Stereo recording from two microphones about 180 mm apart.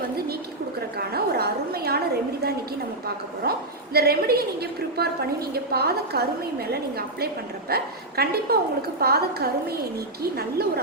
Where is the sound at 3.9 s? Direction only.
60° right (ahead or behind).